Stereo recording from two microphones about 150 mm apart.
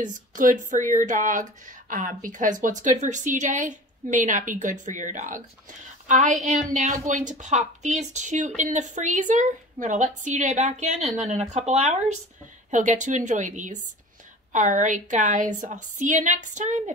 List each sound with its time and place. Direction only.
0.0 s a woman's voice: 60° right (ahead or behind)